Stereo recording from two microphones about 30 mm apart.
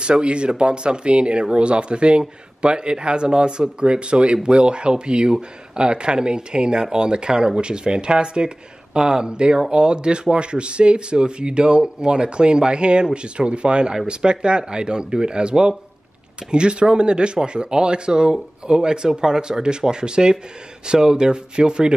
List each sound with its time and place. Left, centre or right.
0.0 s speech: right